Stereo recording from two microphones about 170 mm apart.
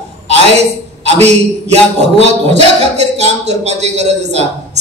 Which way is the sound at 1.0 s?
40° right (ahead or behind).